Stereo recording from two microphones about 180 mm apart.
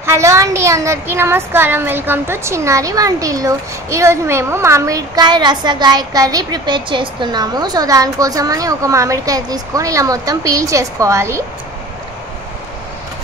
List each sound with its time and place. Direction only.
0.0 s speech: 15° right (ahead or behind)